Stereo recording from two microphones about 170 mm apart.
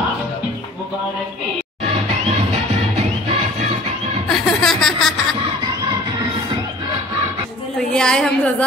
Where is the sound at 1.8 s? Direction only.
40° right (ahead or behind).